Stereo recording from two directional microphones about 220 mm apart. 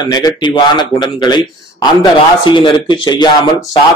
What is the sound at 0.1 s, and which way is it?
A man's voice, 20° left (ahead or behind).